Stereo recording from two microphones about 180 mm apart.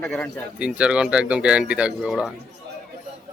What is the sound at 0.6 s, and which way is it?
Speech, 5° right (ahead or behind).